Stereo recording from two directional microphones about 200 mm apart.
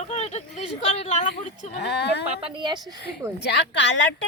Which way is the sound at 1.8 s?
60° left (ahead or behind).